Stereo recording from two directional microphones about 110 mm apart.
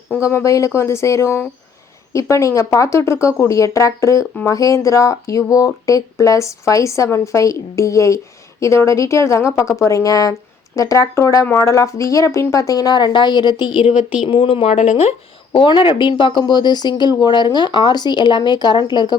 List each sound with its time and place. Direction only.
0.2 s speech: 25° left (ahead or behind); by 15.1 s 80° left
15.5 s speech: 50° left (ahead or behind)